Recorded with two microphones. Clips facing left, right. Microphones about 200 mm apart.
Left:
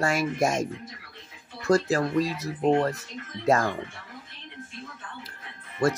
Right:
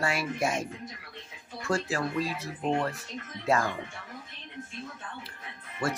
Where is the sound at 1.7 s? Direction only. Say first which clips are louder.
Left 7 dB; 40° left (ahead or behind).